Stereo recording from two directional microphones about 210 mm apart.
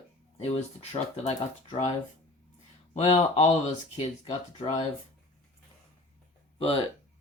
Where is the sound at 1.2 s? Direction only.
30° left (ahead or behind).